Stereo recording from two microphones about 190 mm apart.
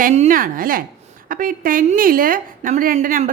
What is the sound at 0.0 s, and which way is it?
A woman's voice, 40° right (ahead or behind).